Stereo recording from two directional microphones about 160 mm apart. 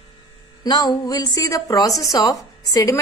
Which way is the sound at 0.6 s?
25° left (ahead or behind).